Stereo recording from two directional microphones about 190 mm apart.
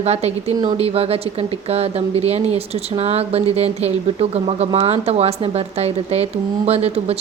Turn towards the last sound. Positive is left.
turn(degrees=-30)  # may be behind; listen again after turning